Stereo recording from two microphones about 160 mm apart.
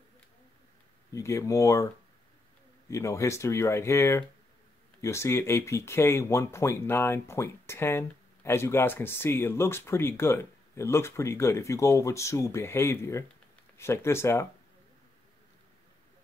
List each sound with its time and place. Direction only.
1.1 s speech: 20° left (ahead or behind)
2.9 s speech: 20° left (ahead or behind)